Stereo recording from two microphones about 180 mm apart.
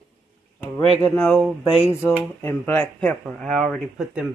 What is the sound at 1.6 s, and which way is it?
Speech, 35° left (ahead or behind).